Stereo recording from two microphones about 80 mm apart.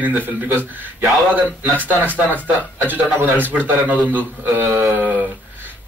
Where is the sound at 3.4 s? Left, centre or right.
Right.